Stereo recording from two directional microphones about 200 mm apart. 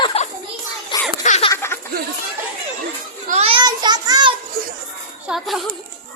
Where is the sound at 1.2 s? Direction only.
35° left (ahead or behind).